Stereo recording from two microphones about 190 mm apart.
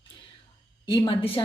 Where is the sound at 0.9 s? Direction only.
30° left (ahead or behind).